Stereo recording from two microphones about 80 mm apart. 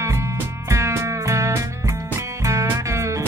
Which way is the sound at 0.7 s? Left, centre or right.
Right.